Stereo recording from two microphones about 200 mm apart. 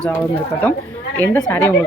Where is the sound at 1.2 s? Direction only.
10° left (ahead or behind).